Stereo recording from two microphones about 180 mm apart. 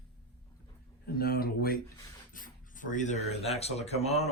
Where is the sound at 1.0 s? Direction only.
55° left (ahead or behind).